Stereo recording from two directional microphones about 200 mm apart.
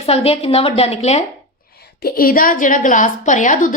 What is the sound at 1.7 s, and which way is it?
A woman's voice, 50° left (ahead or behind).